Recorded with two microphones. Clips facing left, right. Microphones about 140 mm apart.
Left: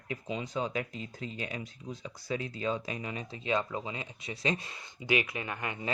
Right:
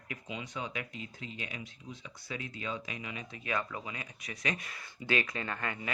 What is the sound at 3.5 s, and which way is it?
Speech, 25° left (ahead or behind).